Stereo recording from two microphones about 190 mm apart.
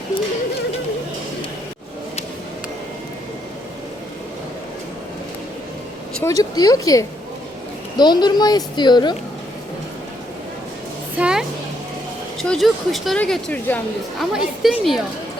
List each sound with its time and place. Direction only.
6.2 s a woman's voice: 20° left (ahead or behind)
11.2 s music: 5° right (ahead or behind)
12.4 s speech: centre (ahead or behind)